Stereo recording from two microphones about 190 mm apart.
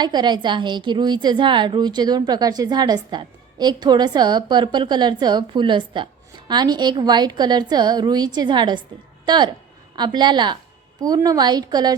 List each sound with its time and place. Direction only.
0.0 s a woman's voice: 20° right (ahead or behind)